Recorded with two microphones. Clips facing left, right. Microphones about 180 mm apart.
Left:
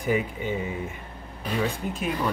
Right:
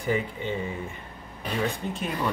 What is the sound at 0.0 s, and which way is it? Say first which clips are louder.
Speech: left 2 dB; 10° left (ahead or behind).